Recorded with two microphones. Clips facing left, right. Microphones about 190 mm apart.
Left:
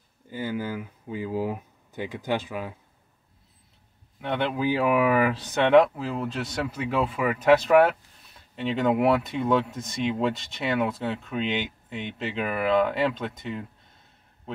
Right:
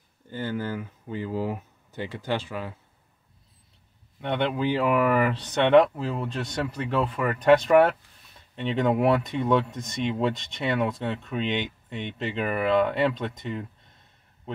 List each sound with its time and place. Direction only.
0.3 s speech: 10° left (ahead or behind)
4.2 s speech: 5° left (ahead or behind)